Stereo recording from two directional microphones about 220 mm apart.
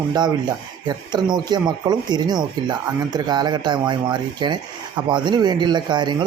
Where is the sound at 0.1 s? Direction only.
20° right (ahead or behind).